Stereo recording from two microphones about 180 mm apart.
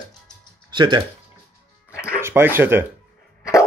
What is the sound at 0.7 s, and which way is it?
Music, 25° right (ahead or behind).